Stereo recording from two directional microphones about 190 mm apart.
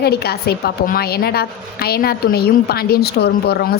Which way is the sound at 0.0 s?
55° left (ahead or behind).